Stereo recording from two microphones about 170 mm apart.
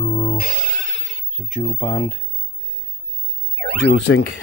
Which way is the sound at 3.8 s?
90° left.